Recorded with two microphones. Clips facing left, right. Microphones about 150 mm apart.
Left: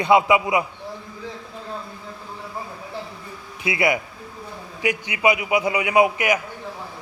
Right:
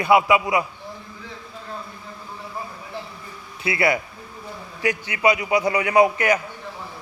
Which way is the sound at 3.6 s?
15° left (ahead or behind).